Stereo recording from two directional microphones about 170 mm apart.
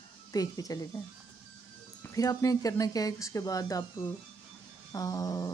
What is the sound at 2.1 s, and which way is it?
Speech, 20° left (ahead or behind).